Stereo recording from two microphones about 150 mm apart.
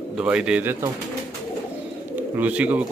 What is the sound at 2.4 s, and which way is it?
Speech, 10° right (ahead or behind).